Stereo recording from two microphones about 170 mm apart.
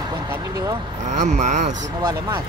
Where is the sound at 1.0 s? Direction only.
45° right (ahead or behind).